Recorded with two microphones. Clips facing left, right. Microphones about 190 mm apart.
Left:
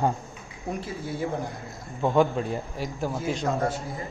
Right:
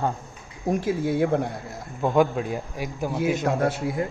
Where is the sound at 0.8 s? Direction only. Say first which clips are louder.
Right 10 dB; 70° right (ahead or behind).